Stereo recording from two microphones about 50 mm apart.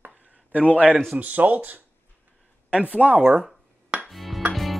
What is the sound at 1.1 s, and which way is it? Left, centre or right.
Speech, right.